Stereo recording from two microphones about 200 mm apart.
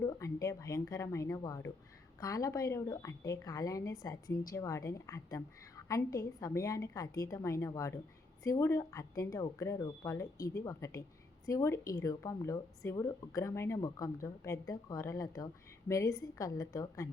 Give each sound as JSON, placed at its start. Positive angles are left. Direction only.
{"t": 0.0, "sound": "a woman's voice", "side_deg": 15}